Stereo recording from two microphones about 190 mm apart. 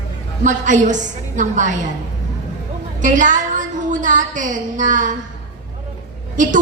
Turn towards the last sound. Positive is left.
turn(degrees=-45)  # may be behind; listen again after turning